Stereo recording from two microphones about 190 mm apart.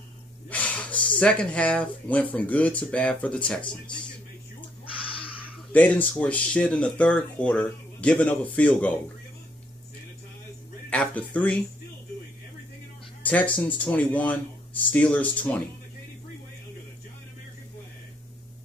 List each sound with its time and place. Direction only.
0.5 s speech: 5° left (ahead or behind)
5.0 s a sound: 25° left (ahead or behind)
5.7 s speech: 10° left (ahead or behind)
10.9 s speech: 5° left (ahead or behind)
13.2 s speech: 10° left (ahead or behind)